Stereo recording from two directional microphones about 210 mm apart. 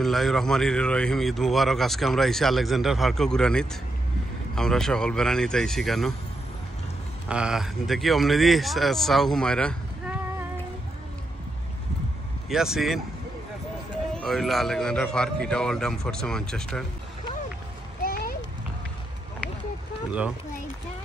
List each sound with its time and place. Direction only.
0.0 s speech: centre (ahead or behind)
7.2 s speech: 5° right (ahead or behind)
12.4 s speech: centre (ahead or behind)
14.1 s speech: centre (ahead or behind)
18.0 s a sound: 45° left (ahead or behind)